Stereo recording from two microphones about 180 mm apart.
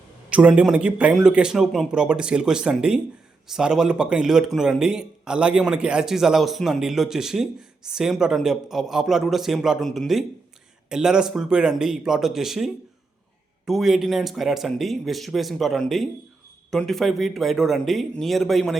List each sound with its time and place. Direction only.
0.3 s speech: 5° right (ahead or behind)